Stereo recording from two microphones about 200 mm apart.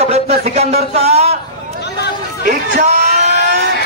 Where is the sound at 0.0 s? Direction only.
30° right (ahead or behind).